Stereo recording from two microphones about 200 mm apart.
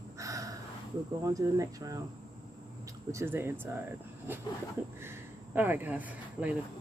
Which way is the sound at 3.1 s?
15° right (ahead or behind).